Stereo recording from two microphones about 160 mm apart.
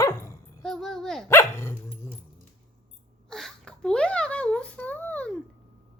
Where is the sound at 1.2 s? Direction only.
15° left (ahead or behind).